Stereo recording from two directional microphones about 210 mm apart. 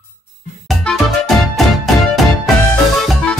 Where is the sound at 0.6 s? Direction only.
Centre (ahead or behind).